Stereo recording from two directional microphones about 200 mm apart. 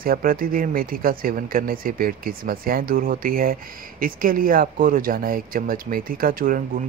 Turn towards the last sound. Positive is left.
turn(degrees=-45)  # may be behind; listen again after turning